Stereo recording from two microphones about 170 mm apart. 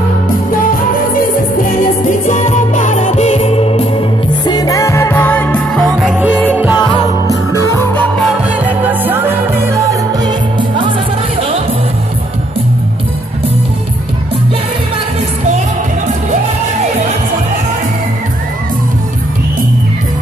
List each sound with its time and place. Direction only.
1.1 s music: 55° left (ahead or behind); by 4.0 s 35° left (ahead or behind)
4.5 s music: 20° left (ahead or behind); by 6.8 s 10° right (ahead or behind)
7.5 s music: 15° left (ahead or behind)
8.8 s music: 10° right (ahead or behind); by 11.0 s 30° right (ahead or behind)